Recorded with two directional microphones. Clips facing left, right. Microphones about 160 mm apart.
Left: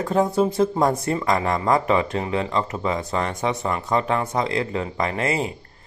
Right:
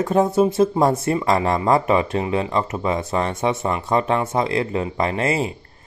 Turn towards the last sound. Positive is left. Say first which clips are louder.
# right 2 dB
turn(degrees=-25)  # may be behind; listen again after turning